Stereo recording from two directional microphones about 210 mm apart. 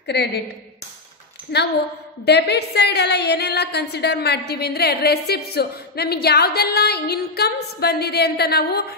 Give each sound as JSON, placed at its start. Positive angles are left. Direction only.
{"t": 0.0, "sound": "a woman's voice", "side_deg": 50}
{"t": 1.5, "sound": "a woman's voice", "side_deg": 50}